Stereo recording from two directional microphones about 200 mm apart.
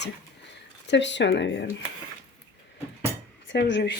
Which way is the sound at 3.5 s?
65° left (ahead or behind).